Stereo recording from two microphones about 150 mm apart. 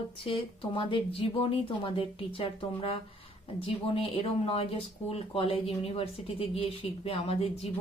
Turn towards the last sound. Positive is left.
turn(degrees=40)  # may be behind; listen again after turning